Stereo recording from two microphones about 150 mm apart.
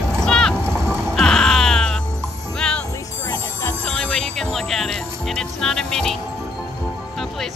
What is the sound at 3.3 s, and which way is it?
Music, 20° left (ahead or behind).